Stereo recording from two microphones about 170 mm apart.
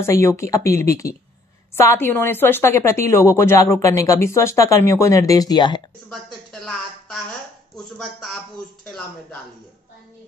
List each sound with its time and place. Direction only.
0.0 s a woman's voice: 15° left (ahead or behind)
6.0 s a sound: centre (ahead or behind)
7.7 s speech: centre (ahead or behind)